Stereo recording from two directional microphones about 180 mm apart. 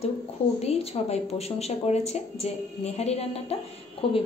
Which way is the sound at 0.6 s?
35° left (ahead or behind).